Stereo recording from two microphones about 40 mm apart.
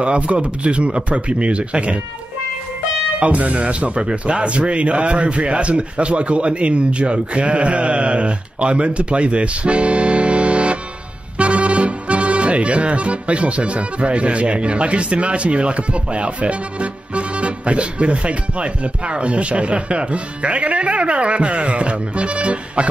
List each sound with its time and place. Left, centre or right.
0.0 s speech: right
3.2 s speech: right